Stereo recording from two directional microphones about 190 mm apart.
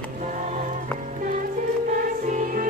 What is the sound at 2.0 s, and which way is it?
Music, 45° right (ahead or behind).